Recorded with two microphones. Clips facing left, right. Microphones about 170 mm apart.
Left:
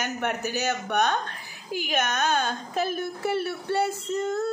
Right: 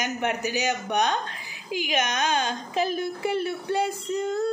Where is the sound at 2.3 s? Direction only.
50° left (ahead or behind).